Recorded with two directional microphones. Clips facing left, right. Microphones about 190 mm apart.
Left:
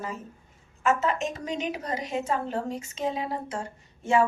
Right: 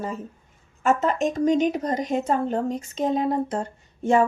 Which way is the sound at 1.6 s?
40° right (ahead or behind).